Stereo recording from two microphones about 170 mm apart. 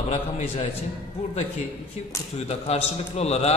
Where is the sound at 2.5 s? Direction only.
35° left (ahead or behind).